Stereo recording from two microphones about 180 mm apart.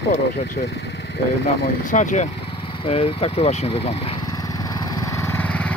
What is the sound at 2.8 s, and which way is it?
Speech, 35° left (ahead or behind).